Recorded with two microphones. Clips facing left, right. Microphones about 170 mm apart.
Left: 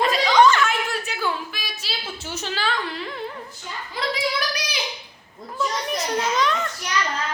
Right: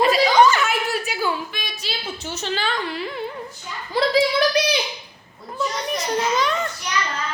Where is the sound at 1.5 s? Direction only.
5° left (ahead or behind).